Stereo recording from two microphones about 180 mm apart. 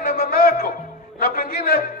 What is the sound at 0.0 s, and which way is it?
Music, 55° left (ahead or behind).